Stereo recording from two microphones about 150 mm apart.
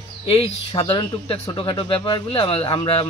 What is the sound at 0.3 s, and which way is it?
Speech, 35° left (ahead or behind).